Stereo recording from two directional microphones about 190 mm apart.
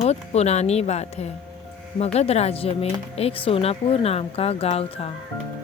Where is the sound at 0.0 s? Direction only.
35° left (ahead or behind).